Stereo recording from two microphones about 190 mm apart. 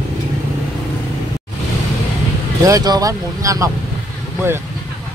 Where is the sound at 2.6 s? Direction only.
20° right (ahead or behind).